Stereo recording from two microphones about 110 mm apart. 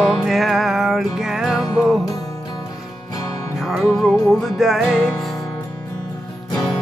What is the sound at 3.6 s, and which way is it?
Music, centre (ahead or behind).